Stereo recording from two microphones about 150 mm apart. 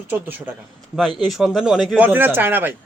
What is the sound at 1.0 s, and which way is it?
A man's voice, centre (ahead or behind).